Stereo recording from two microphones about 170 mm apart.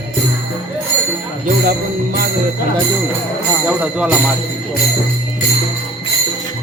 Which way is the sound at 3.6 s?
5° right (ahead or behind).